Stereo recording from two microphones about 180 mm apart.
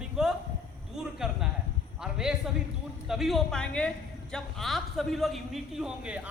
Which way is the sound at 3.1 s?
Centre (ahead or behind).